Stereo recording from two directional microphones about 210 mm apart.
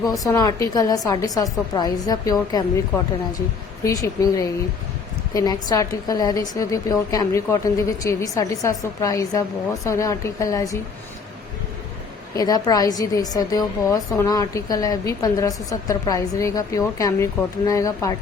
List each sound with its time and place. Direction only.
0.3 s a woman's voice: 15° left (ahead or behind)
12.4 s a woman's voice: 20° left (ahead or behind)